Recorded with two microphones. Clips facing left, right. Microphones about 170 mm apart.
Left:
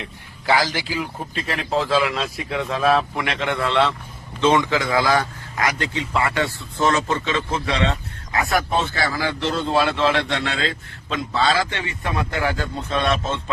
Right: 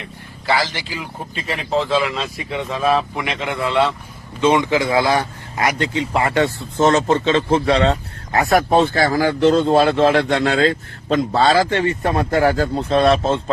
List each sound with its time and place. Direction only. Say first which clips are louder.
0.4 s a man's voice: even; 10° left (ahead or behind)
4.4 s speech: right 2 dB; 15° right (ahead or behind); by 8.6 s 35° right (ahead or behind)
8.7 s a man's voice: right 8 dB; 55° right (ahead or behind); by 13.4 s 35° right (ahead or behind)